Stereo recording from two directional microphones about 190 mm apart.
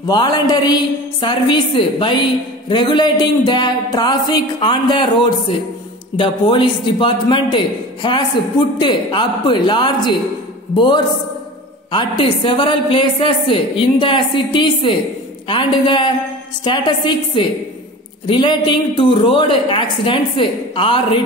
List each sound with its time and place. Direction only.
0.0 s a woman's voice: 25° left (ahead or behind)
11.9 s a woman's voice: 25° left (ahead or behind)